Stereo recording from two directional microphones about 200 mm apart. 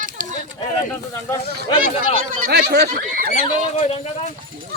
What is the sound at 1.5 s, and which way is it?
Speech, 45° right (ahead or behind).